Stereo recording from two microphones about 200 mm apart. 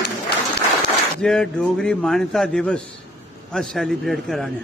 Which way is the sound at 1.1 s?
5° left (ahead or behind).